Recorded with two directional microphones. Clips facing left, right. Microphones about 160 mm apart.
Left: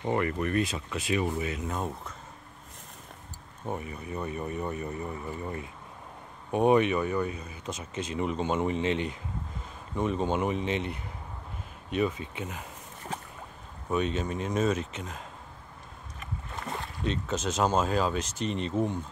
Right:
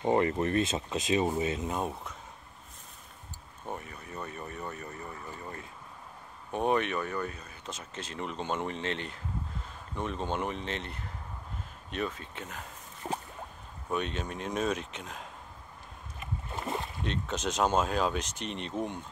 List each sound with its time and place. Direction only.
0.0 s speech: 25° right (ahead or behind)
3.6 s speech: 10° left (ahead or behind)
13.8 s speech: 5° left (ahead or behind)
16.5 s boat: 25° right (ahead or behind)
16.8 s speech: centre (ahead or behind)